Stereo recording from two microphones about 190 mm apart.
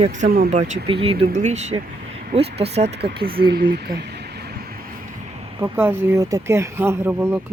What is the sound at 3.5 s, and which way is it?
Speech, 55° right (ahead or behind).